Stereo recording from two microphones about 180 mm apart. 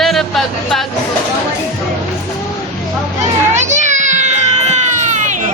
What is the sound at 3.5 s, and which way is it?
Baby cry, 40° right (ahead or behind).